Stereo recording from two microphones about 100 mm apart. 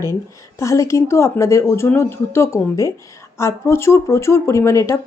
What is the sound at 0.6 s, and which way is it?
Speech, 30° left (ahead or behind).